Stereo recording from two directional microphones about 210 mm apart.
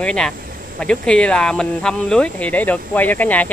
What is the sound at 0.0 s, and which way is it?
Speech, 5° left (ahead or behind).